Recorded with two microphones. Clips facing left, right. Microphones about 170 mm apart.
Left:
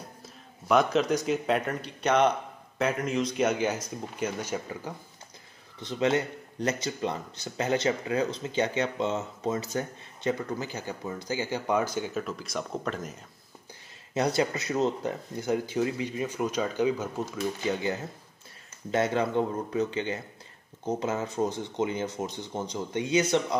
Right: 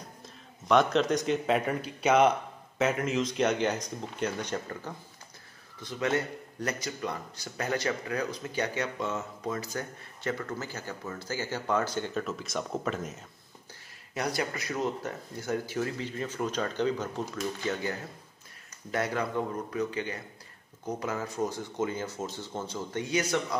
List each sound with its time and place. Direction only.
0.7 s speech: 5° left (ahead or behind)
5.8 s a man's voice: 20° left (ahead or behind); by 13.2 s centre (ahead or behind)
14.1 s a man's voice: 25° left (ahead or behind)